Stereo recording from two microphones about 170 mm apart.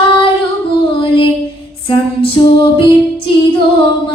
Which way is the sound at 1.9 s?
30° left (ahead or behind).